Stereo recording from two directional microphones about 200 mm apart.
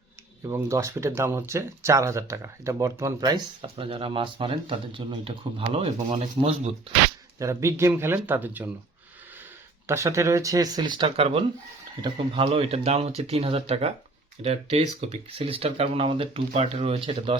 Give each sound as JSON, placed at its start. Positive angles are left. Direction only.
{"t": 0.4, "sound": "speech", "side_deg": -15}
{"t": 7.3, "sound": "speech", "side_deg": -15}
{"t": 9.8, "sound": "speech", "side_deg": -15}